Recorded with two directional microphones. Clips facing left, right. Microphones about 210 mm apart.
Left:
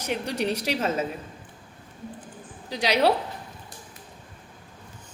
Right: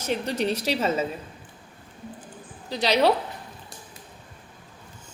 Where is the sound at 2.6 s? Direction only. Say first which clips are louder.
Right 1 dB; 10° left (ahead or behind).